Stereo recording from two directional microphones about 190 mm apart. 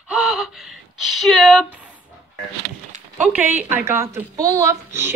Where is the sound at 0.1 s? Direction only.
5° right (ahead or behind).